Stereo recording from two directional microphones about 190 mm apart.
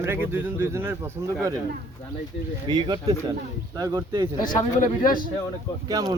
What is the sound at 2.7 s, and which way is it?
A man's voice, 20° right (ahead or behind).